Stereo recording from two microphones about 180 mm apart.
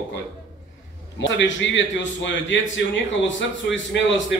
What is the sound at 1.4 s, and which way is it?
A man's voice, 90° left.